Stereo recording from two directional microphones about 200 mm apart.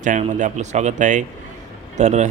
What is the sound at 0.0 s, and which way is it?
A man's voice, 40° right (ahead or behind).